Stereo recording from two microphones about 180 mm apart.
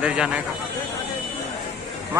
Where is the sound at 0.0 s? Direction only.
5° right (ahead or behind).